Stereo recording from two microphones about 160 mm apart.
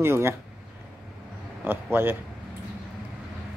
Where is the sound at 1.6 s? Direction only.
15° right (ahead or behind).